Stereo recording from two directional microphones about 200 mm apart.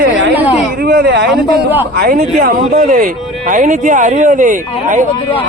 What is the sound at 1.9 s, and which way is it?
Speech, 50° right (ahead or behind).